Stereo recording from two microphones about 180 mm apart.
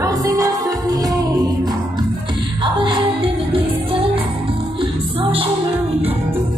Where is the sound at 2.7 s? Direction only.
30° right (ahead or behind).